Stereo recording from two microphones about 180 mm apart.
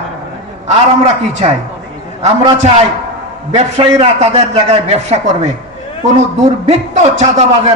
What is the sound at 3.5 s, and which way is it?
A man's voice, 35° right (ahead or behind).